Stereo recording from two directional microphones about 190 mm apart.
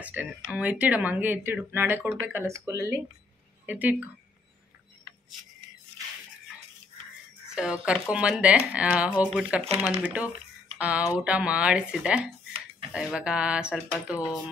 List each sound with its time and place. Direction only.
0.0 s speech: 10° right (ahead or behind)
7.5 s speech: 5° right (ahead or behind)
14.1 s a sound: 20° left (ahead or behind)